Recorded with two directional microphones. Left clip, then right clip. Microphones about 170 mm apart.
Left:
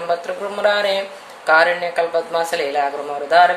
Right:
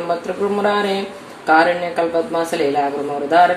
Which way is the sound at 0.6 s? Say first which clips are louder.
Left 5 dB; 20° left (ahead or behind).